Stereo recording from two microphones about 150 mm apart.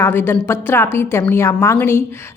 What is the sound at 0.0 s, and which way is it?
A woman's voice, 15° left (ahead or behind).